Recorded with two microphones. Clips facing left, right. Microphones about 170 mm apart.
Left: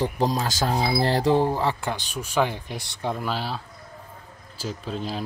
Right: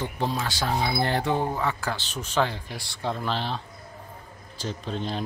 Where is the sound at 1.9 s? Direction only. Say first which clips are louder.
Left 2 dB; 10° left (ahead or behind).